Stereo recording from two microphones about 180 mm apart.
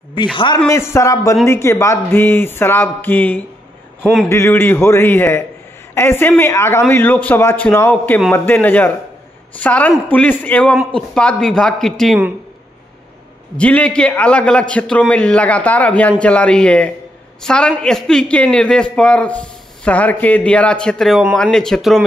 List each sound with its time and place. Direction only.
0.1 s a man's voice: 25° left (ahead or behind)
0.7 s a man's voice: 15° left (ahead or behind)
13.6 s a man's voice: 5° left (ahead or behind)